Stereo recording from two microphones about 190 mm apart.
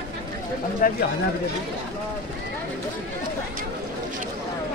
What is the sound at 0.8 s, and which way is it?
Speech, 45° left (ahead or behind).